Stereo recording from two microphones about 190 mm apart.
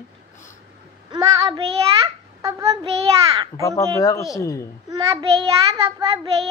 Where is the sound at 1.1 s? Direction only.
20° right (ahead or behind).